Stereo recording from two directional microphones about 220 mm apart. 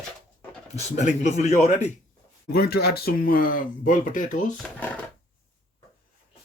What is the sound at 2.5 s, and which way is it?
Speech, 45° left (ahead or behind).